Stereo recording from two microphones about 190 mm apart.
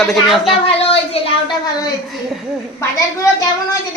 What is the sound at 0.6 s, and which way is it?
Speech, 30° left (ahead or behind).